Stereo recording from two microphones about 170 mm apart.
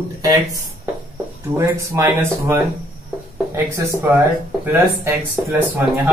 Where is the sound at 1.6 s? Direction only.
15° right (ahead or behind).